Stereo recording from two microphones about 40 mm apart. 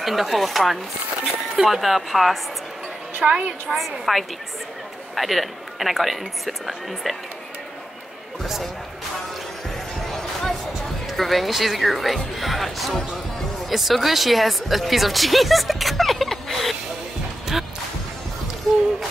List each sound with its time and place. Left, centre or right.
0.0 s speech: centre
3.2 s a woman's voice: right
3.6 s speech: centre
10.0 s music: centre
11.1 s speech: centre